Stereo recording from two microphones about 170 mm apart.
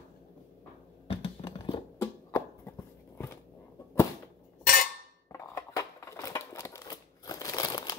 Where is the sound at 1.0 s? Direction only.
30° left (ahead or behind).